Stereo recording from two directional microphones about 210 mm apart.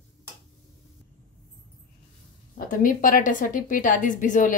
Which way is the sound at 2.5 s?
40° left (ahead or behind).